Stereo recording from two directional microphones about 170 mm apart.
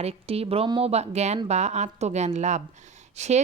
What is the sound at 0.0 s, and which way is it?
A woman's voice, 35° right (ahead or behind).